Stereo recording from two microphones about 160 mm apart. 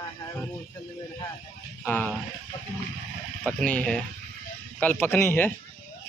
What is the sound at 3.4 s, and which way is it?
Speech, 10° left (ahead or behind).